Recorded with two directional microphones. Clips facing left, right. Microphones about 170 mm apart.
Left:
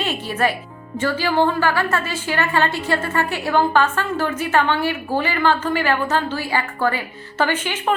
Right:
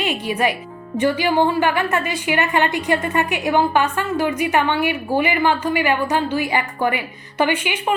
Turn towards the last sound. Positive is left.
turn(degrees=-15)  # may be behind; listen again after turning